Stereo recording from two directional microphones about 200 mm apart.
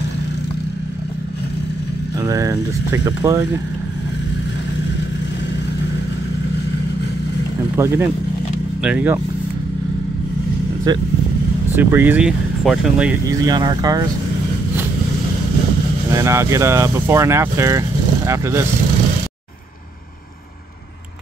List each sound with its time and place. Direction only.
2.1 s speech: 15° right (ahead or behind)
7.7 s speech: 10° right (ahead or behind)
10.9 s speech: 20° right (ahead or behind)
11.7 s speech: 10° right (ahead or behind)
13.3 s speech: 20° right (ahead or behind)
16.1 s speech: 15° right (ahead or behind)